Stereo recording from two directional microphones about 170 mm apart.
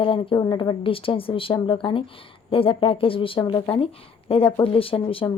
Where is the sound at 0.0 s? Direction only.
30° left (ahead or behind).